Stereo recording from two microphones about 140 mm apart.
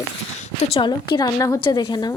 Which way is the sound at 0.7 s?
35° left (ahead or behind).